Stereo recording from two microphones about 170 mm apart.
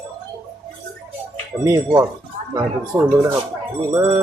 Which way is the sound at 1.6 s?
15° right (ahead or behind).